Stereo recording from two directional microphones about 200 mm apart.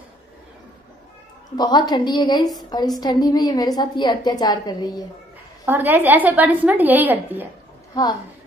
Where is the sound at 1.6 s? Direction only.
20° left (ahead or behind).